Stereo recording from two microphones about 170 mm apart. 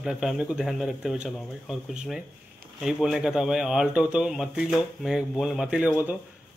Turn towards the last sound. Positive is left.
turn(degrees=-10)  # may be behind; listen again after turning